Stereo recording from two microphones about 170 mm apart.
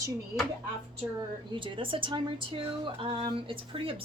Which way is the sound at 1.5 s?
30° right (ahead or behind).